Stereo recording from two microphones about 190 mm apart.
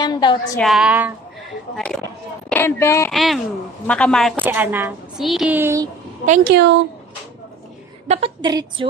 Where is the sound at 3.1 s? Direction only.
Centre (ahead or behind).